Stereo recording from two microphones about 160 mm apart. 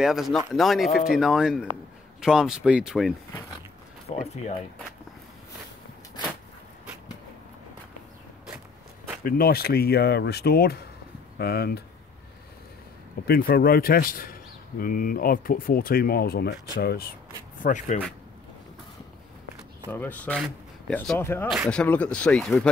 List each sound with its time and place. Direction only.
0.0 s speech: centre (ahead or behind)
4.1 s speech: 45° left (ahead or behind)
9.2 s a man's voice: 70° left (ahead or behind)
13.3 s a man's voice: 70° left (ahead or behind)
17.6 s speech: 50° left (ahead or behind)
19.9 s speech: 10° left (ahead or behind)
21.5 s speech: 5° left (ahead or behind)